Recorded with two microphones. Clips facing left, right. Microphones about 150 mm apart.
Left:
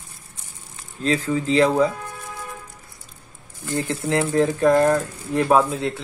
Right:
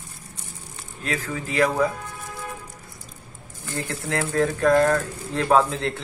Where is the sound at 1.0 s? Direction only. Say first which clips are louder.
Left 8 dB; 30° left (ahead or behind).